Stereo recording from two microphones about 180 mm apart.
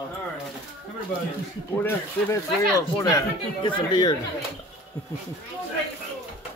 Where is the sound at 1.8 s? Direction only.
15° left (ahead or behind).